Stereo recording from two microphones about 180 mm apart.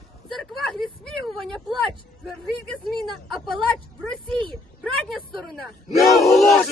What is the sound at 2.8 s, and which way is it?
Battle cry, centre (ahead or behind).